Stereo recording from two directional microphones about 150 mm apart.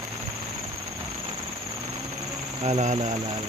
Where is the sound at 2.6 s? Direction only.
45° right (ahead or behind).